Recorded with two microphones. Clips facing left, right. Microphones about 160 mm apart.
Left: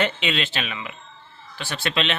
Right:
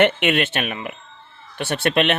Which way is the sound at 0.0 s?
60° right (ahead or behind).